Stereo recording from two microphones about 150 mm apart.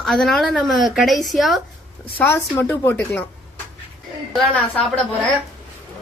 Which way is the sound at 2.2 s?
15° left (ahead or behind).